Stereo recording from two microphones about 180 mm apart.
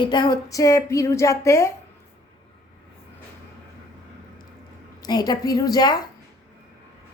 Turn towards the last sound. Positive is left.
turn(degrees=20)  # may be behind; listen again after turning